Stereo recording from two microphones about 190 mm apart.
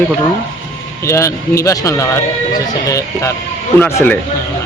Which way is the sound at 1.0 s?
15° left (ahead or behind).